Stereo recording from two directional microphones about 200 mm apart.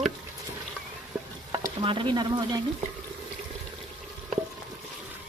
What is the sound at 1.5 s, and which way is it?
Stir, 20° right (ahead or behind).